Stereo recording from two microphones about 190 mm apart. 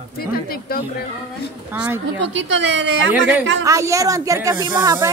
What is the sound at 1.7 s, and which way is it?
Speech, 10° right (ahead or behind).